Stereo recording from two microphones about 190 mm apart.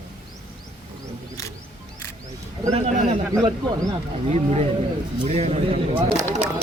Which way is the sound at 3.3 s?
20° right (ahead or behind).